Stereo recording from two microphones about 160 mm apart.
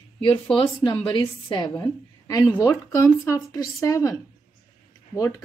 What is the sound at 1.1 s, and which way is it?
A woman's voice, 30° left (ahead or behind).